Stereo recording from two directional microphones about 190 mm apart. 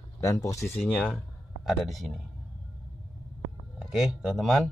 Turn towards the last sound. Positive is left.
turn(degrees=0)  # may be behind; listen again after turning